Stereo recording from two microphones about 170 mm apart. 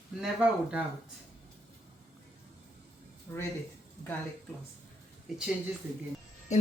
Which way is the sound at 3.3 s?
15° left (ahead or behind).